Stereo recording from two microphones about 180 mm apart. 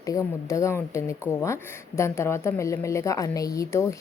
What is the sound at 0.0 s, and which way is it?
A woman's voice, 20° left (ahead or behind).